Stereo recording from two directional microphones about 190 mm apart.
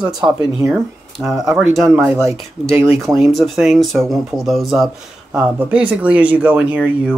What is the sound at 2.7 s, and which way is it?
Speech, 15° right (ahead or behind).